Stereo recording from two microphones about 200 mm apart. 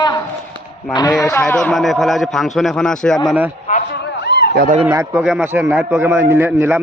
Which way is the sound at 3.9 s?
60° left (ahead or behind).